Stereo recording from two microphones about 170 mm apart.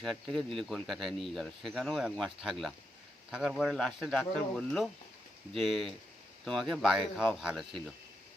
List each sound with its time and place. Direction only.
0.0 s speech: centre (ahead or behind)